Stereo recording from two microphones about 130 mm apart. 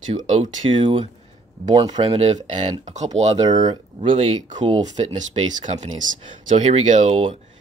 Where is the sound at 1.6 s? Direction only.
35° right (ahead or behind).